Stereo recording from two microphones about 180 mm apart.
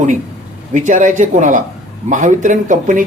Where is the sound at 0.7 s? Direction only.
45° right (ahead or behind).